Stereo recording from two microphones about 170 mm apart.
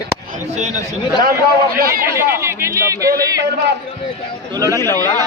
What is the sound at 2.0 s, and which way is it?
Speech, 15° right (ahead or behind).